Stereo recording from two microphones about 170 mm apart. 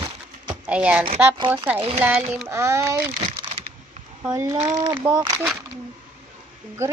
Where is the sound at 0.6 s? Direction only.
5° right (ahead or behind).